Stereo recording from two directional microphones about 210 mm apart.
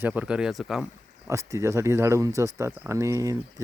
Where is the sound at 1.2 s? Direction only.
15° right (ahead or behind).